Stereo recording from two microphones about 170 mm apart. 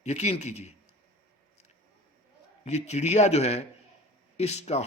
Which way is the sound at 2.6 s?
40° left (ahead or behind).